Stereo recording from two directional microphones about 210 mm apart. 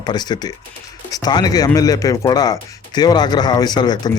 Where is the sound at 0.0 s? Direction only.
20° left (ahead or behind).